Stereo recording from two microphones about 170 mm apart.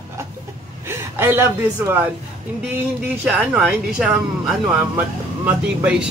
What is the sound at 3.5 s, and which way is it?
A man's voice, 5° right (ahead or behind).